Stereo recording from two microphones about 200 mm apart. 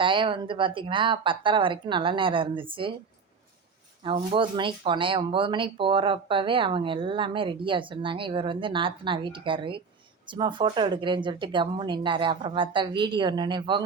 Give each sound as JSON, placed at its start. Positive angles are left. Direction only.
{"t": 0.0, "sound": "speech", "side_deg": -25}
{"t": 4.0, "sound": "speech", "side_deg": -25}